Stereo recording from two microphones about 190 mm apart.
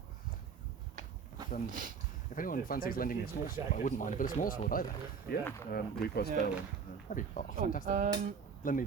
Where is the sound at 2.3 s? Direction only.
45° left (ahead or behind).